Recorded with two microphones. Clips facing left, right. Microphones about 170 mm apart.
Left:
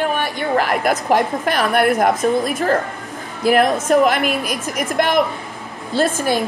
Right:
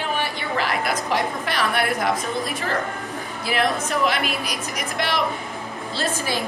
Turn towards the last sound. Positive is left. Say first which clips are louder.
# left 8 dB
turn(degrees=50)  # may be behind; listen again after turning